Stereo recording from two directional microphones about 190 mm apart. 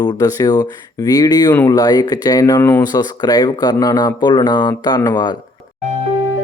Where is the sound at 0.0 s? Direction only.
20° left (ahead or behind).